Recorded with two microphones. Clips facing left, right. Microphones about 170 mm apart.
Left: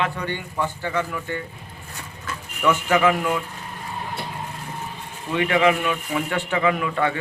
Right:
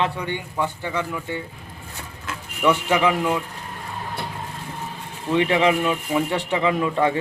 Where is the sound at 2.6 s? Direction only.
15° right (ahead or behind).